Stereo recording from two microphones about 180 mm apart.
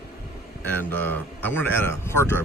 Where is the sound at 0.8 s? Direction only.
10° left (ahead or behind).